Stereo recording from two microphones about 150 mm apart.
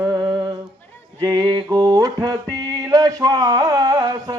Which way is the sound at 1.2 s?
25° right (ahead or behind).